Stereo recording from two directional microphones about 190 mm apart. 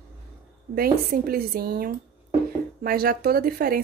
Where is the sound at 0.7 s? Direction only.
50° right (ahead or behind).